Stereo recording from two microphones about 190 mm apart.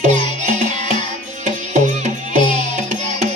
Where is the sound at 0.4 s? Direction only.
40° right (ahead or behind).